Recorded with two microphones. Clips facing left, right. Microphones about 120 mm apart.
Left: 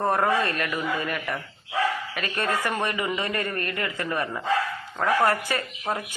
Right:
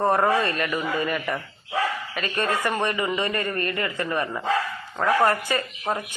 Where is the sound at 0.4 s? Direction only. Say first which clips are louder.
Right 2 dB; centre (ahead or behind).